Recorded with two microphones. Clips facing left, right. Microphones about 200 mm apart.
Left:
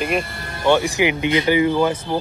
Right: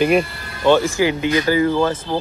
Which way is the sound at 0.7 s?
15° left (ahead or behind).